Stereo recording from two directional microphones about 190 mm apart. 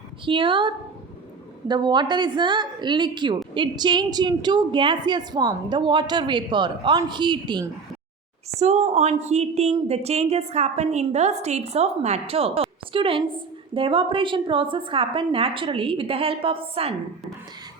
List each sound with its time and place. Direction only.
0.3 s a woman's voice: 25° right (ahead or behind)
8.5 s a woman's voice: 35° right (ahead or behind)